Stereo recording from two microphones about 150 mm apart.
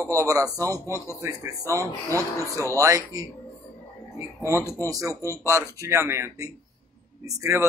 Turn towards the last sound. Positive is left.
turn(degrees=-20)  # may be behind; listen again after turning